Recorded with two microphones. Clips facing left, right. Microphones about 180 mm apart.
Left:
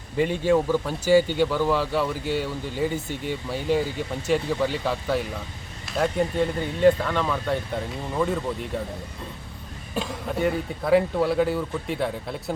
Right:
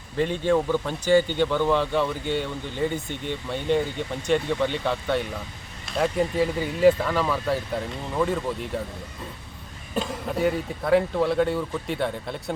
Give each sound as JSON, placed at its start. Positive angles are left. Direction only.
{"t": 0.2, "sound": "a man's voice", "side_deg": 10}
{"t": 9.9, "sound": "a man's voice", "side_deg": 0}